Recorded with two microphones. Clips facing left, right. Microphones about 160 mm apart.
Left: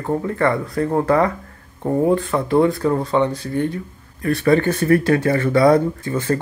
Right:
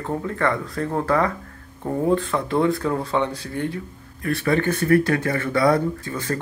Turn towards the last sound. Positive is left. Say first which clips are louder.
# left 4 dB
turn(degrees=25)  # may be behind; listen again after turning